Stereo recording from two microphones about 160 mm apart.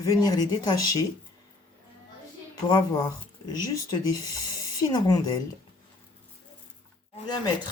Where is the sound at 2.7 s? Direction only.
25° left (ahead or behind).